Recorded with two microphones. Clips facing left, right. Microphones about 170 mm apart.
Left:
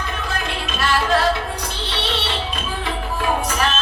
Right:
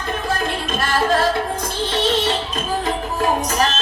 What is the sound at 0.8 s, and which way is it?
Music, 45° right (ahead or behind).